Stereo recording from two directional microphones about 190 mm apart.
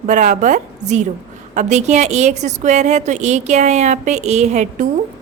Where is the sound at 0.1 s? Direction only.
40° right (ahead or behind).